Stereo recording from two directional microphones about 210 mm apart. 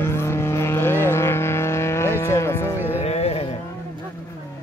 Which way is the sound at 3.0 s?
30° left (ahead or behind).